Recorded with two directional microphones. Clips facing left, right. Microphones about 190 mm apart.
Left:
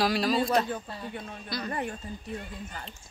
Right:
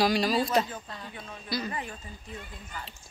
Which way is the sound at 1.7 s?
50° left (ahead or behind).